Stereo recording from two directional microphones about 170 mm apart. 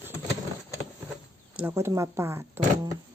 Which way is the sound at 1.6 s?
10° right (ahead or behind).